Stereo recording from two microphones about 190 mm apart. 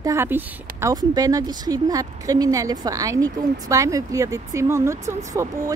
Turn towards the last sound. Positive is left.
turn(degrees=-15)  # may be behind; listen again after turning